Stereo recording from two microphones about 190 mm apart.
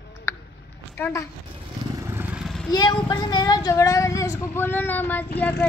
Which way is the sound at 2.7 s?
25° left (ahead or behind).